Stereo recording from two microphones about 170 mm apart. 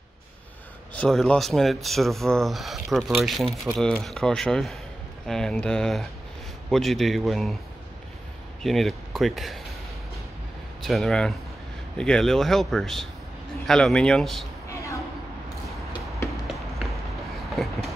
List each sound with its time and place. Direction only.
0.9 s speech: 5° left (ahead or behind)
8.6 s speech: centre (ahead or behind)
10.8 s speech: centre (ahead or behind)
14.7 s a sound: 15° left (ahead or behind)